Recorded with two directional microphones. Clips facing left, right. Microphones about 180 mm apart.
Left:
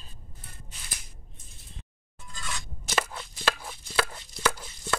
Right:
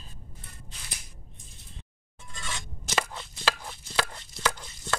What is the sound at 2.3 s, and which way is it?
Scissors, 25° right (ahead or behind).